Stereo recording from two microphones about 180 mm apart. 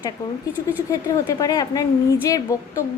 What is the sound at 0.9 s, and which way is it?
A woman's voice, 20° left (ahead or behind).